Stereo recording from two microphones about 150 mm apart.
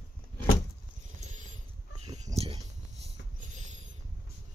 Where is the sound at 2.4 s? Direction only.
35° right (ahead or behind).